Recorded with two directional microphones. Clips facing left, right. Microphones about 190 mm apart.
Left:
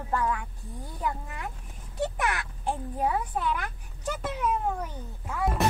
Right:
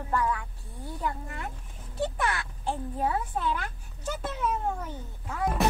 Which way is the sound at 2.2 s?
15° left (ahead or behind).